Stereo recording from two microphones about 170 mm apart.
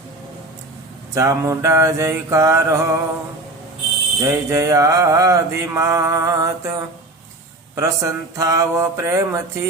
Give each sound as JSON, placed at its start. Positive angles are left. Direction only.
{"t": 1.1, "sound": "mantra", "side_deg": -20}
{"t": 4.3, "sound": "mantra", "side_deg": -15}